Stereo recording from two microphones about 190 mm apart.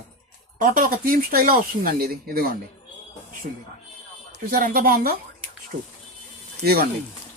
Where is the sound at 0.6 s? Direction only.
45° right (ahead or behind).